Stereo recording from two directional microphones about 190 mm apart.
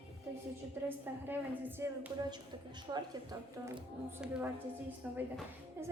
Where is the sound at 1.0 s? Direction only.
10° right (ahead or behind).